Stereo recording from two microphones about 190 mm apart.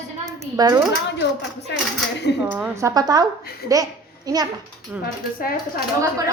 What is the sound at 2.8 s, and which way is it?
A woman's voice, 20° right (ahead or behind).